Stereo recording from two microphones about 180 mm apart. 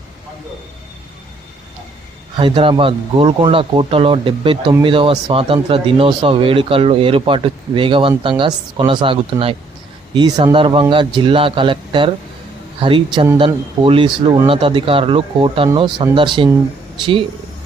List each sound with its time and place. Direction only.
2.4 s speech: 30° right (ahead or behind)